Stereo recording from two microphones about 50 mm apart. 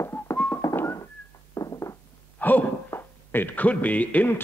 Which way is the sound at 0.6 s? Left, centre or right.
Left.